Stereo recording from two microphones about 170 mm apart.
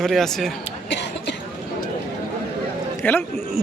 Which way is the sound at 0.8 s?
90° left.